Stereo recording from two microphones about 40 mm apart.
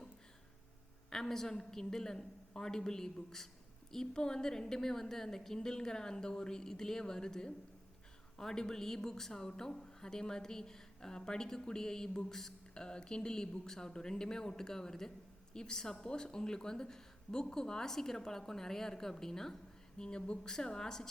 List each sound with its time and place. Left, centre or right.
1.1 s a woman's voice: centre